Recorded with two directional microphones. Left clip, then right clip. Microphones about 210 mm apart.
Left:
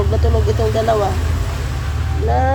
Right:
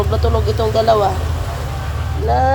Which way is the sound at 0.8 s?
10° right (ahead or behind).